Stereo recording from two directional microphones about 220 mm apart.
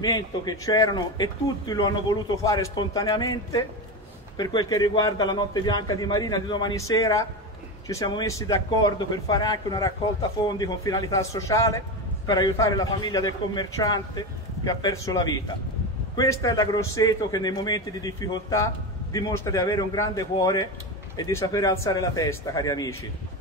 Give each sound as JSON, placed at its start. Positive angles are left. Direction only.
{"t": 0.0, "sound": "speech", "side_deg": 15}